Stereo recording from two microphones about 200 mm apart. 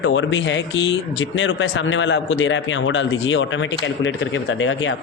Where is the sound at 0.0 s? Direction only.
70° left (ahead or behind).